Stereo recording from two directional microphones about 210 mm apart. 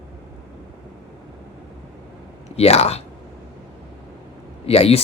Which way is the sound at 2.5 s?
30° left (ahead or behind).